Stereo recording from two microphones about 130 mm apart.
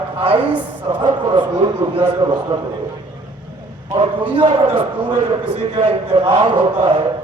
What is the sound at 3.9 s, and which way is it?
A man's voice, 40° right (ahead or behind).